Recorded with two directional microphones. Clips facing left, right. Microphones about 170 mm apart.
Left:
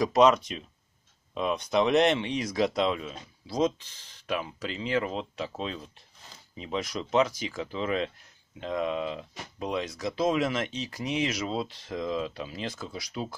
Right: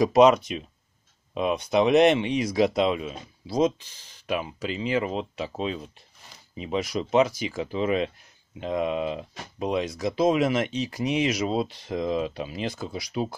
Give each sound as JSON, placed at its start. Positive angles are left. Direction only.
{"t": 0.0, "sound": "speech", "side_deg": -10}